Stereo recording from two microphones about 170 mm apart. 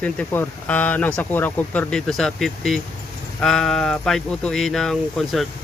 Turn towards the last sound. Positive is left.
turn(degrees=0)  # may be behind; listen again after turning